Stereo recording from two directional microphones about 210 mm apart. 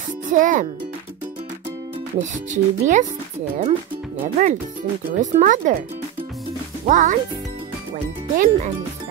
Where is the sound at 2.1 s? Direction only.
35° right (ahead or behind).